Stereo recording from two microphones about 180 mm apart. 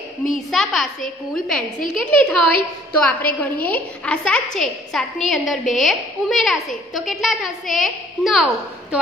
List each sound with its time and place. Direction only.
0.3 s a woman's voice: centre (ahead or behind)